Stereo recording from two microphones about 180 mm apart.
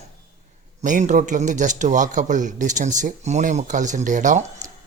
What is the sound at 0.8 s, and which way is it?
A man's voice, 45° right (ahead or behind).